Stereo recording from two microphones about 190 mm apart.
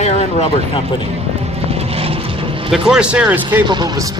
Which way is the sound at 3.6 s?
25° right (ahead or behind).